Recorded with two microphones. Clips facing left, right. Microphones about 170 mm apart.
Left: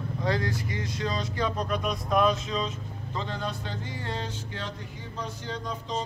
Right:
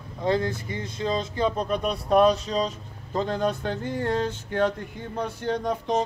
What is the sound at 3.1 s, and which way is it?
Speech, 45° right (ahead or behind).